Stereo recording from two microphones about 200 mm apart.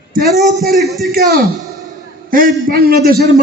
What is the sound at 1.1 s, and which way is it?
A man's voice, 50° right (ahead or behind).